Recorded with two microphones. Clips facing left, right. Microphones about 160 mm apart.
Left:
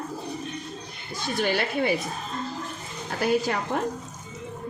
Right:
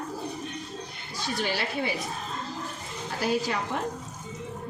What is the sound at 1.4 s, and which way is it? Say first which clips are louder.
Speech: left 5 dB; 50° left (ahead or behind).